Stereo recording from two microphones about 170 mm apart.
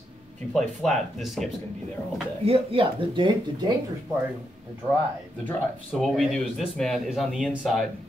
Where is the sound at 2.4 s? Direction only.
35° right (ahead or behind).